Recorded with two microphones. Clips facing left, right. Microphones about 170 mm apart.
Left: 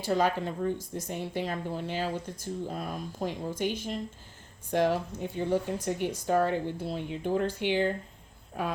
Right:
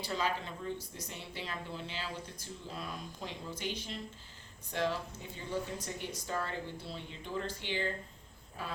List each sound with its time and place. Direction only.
0.0 s speech: 55° left (ahead or behind)